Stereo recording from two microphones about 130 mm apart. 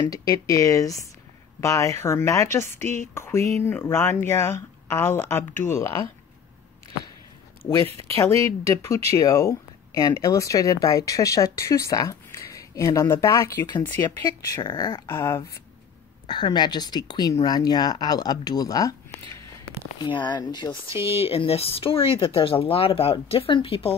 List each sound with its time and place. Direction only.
0.0 s speech: 30° left (ahead or behind)
7.6 s speech: 25° left (ahead or behind)
15.2 s speech: 25° left (ahead or behind)
16.3 s speech: 35° left (ahead or behind)
20.1 s speech: 35° left (ahead or behind)